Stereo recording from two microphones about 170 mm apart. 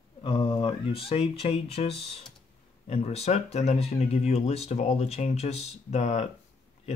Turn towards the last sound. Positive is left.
turn(degrees=40)  # may be behind; listen again after turning